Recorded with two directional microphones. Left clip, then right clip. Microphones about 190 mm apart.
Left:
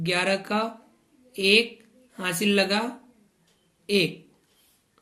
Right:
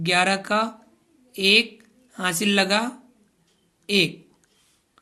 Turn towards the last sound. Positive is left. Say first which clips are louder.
# right 3 dB
turn(degrees=-45)  # may be behind; listen again after turning